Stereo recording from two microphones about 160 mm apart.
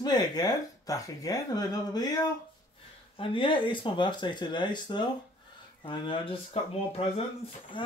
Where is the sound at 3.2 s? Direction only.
30° left (ahead or behind).